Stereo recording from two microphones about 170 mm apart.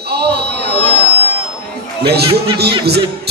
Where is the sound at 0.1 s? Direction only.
75° right (ahead or behind).